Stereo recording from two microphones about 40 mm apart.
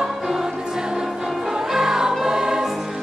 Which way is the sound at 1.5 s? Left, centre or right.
Centre.